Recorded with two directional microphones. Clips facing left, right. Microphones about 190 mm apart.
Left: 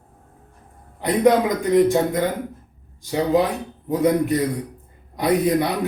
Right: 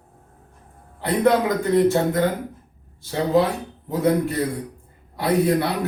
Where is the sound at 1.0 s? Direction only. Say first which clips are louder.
Left 2 dB; 15° left (ahead or behind).